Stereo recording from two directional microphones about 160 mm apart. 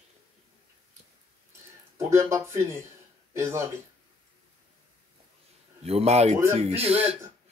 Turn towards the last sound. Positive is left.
turn(degrees=-40)  # may be behind; listen again after turning